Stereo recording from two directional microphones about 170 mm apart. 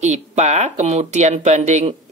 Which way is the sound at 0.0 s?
40° right (ahead or behind).